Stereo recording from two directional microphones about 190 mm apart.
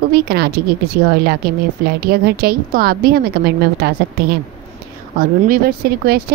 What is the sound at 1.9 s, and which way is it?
Speech, 55° right (ahead or behind).